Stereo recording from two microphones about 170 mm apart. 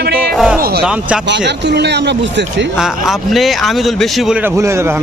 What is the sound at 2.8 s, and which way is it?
A man's voice, centre (ahead or behind).